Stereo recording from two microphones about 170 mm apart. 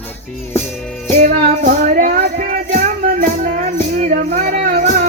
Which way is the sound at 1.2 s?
55° right (ahead or behind).